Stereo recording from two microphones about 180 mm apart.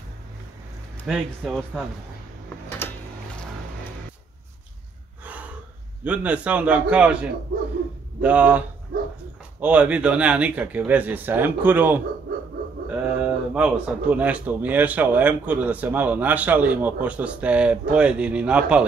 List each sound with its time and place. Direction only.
1.0 s speech: centre (ahead or behind)
2.8 s a sound: 10° left (ahead or behind)
6.0 s speech: 5° right (ahead or behind)
7.5 s speech: 55° right (ahead or behind)
8.2 s speech: 10° right (ahead or behind)
8.9 s speech: 55° right (ahead or behind)
9.6 s speech: 10° right (ahead or behind)